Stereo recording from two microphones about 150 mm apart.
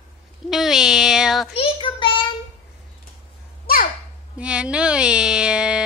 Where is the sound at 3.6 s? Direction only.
70° left (ahead or behind).